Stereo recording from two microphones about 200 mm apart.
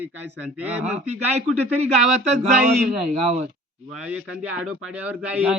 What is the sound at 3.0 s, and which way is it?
Speech, 30° right (ahead or behind).